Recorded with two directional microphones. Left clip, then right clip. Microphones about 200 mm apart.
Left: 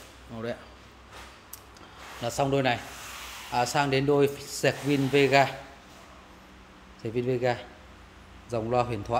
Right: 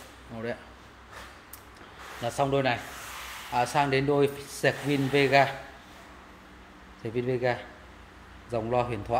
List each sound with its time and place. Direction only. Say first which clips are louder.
2.2 s speech: even; 20° left (ahead or behind)
7.0 s speech: left 1 dB; 20° left (ahead or behind)